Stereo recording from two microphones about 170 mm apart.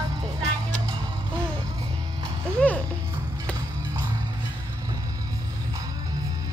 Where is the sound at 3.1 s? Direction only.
15° right (ahead or behind).